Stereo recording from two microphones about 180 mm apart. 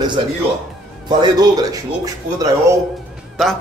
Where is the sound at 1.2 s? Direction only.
20° right (ahead or behind).